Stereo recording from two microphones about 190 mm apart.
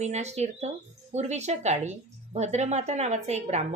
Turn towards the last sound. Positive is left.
turn(degrees=-35)  # may be behind; listen again after turning